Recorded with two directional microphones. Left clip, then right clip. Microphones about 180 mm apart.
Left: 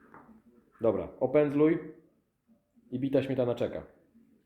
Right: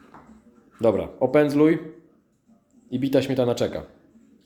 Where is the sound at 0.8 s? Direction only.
15° right (ahead or behind).